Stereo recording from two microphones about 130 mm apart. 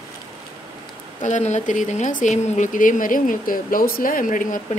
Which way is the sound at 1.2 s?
65° left (ahead or behind).